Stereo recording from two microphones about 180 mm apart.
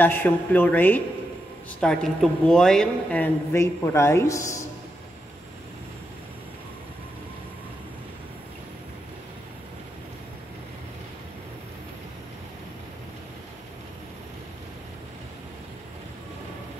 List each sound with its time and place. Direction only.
0.0 s speech: 10° left (ahead or behind)